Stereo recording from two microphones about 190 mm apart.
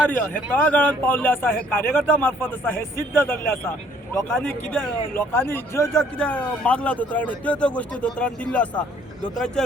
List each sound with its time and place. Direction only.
0.2 s a man's voice: 5° left (ahead or behind)